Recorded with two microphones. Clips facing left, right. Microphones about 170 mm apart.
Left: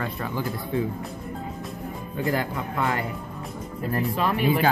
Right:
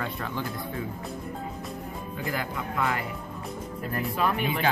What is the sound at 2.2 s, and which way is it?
Speech, 40° left (ahead or behind).